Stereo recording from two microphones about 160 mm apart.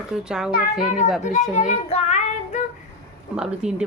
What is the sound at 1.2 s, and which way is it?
Child singing, 50° left (ahead or behind).